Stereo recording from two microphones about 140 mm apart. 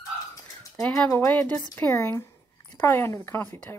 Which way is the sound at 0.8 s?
10° left (ahead or behind).